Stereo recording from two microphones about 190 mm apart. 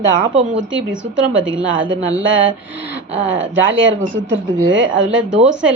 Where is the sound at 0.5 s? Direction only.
75° right (ahead or behind).